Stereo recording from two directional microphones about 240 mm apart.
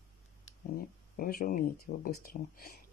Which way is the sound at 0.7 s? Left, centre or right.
Left.